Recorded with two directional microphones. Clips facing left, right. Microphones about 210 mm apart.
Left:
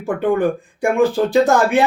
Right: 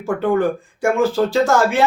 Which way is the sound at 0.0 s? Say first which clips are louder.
Even; 15° left (ahead or behind).